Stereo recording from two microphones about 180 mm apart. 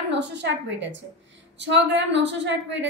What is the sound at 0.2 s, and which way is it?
A woman's voice, 75° right (ahead or behind).